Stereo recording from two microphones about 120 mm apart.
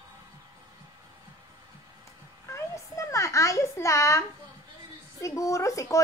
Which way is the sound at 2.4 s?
25° left (ahead or behind).